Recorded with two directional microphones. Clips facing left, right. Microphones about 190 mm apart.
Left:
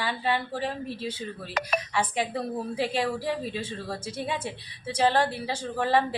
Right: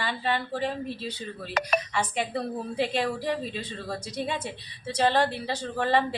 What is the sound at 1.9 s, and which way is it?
A woman's voice, 10° left (ahead or behind).